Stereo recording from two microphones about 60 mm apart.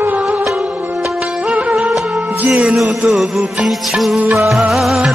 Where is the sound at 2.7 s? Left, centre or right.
Centre.